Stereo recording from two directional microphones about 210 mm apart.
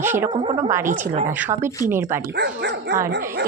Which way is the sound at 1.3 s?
10° right (ahead or behind).